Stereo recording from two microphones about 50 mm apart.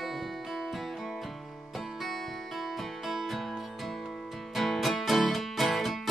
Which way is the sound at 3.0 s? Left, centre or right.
Centre.